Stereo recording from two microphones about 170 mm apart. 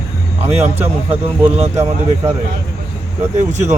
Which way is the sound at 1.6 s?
40° right (ahead or behind).